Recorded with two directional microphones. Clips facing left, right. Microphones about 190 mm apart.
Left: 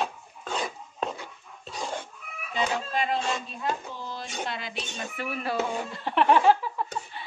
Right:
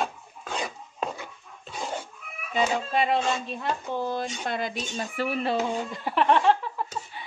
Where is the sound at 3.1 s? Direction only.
60° right (ahead or behind); by 4.8 s 45° right (ahead or behind).